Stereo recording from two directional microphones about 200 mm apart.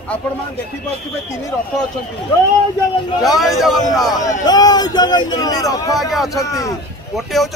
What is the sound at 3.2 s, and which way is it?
Speech, centre (ahead or behind).